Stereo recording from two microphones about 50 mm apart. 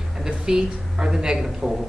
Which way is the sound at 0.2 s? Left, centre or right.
Centre.